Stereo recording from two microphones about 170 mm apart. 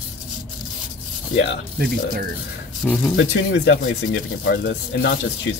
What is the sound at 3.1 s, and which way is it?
Speech, 90° left.